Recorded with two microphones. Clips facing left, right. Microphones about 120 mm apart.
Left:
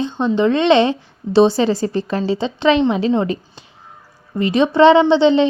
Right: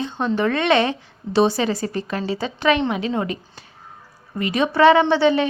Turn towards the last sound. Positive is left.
turn(degrees=25)  # may be behind; listen again after turning